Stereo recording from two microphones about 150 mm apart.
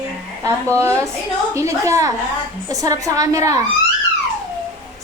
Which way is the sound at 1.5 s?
20° right (ahead or behind).